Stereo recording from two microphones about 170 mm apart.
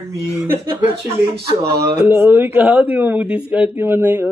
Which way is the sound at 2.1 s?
10° right (ahead or behind).